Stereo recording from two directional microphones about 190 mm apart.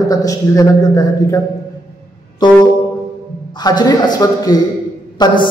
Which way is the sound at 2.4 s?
25° left (ahead or behind).